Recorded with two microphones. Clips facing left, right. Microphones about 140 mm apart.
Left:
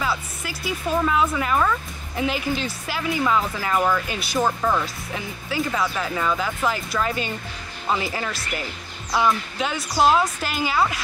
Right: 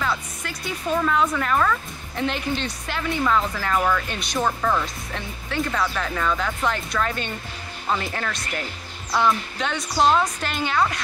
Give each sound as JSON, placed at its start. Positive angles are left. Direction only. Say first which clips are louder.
{"t": 0.0, "sound": "speech", "louder": "even", "side_deg": 5}